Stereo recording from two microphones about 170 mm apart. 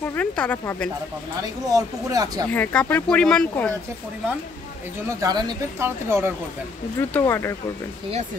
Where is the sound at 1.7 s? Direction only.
20° right (ahead or behind).